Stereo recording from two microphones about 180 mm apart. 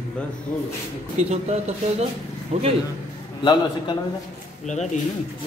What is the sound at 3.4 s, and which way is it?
Speech, 25° left (ahead or behind).